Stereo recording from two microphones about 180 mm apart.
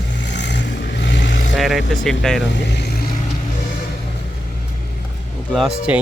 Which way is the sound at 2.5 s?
70° left (ahead or behind).